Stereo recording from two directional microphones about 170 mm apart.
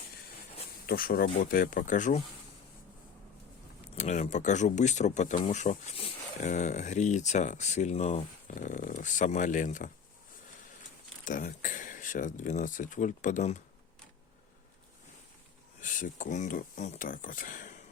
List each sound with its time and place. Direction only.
0.9 s speech: 60° left (ahead or behind)
3.9 s speech: 45° left (ahead or behind)
11.3 s speech: 50° left (ahead or behind)
15.8 s speech: 50° left (ahead or behind)